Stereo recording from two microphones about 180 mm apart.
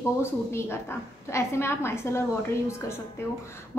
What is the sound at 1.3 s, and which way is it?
Speech, 15° left (ahead or behind).